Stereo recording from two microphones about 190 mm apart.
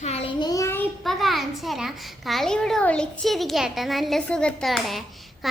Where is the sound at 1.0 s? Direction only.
Centre (ahead or behind).